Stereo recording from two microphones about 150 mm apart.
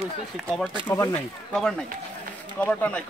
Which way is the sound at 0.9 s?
20° left (ahead or behind).